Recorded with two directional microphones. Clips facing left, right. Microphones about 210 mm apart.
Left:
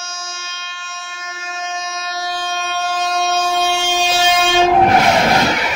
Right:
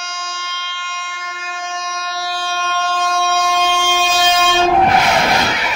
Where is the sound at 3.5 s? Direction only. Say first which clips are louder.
Even; 10° left (ahead or behind).